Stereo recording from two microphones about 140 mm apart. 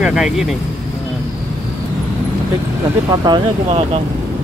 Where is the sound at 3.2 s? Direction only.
30° right (ahead or behind).